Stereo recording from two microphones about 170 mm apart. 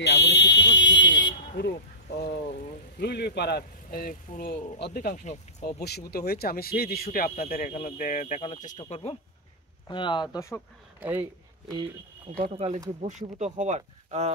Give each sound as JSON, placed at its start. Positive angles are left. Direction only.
{"t": 0.0, "sound": "a sound", "side_deg": 85}
{"t": 3.0, "sound": "speech", "side_deg": 75}
{"t": 5.2, "sound": "speech", "side_deg": 45}
{"t": 5.8, "sound": "speech", "side_deg": 70}
{"t": 9.8, "sound": "speech", "side_deg": 30}
{"t": 11.0, "sound": "speech", "side_deg": -10}
{"t": 12.5, "sound": "speech", "side_deg": -35}